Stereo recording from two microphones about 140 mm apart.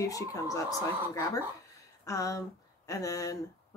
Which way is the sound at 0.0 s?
25° left (ahead or behind).